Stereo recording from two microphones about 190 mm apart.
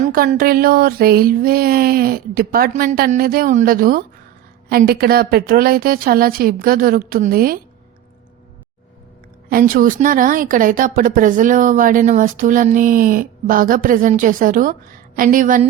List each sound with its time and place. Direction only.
0.1 s speech: 50° right (ahead or behind)
9.5 s speech: 50° right (ahead or behind)